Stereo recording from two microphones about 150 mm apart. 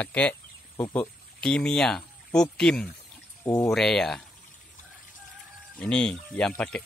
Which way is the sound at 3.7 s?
5° left (ahead or behind).